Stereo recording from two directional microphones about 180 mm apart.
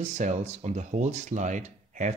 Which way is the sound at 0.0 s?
40° right (ahead or behind).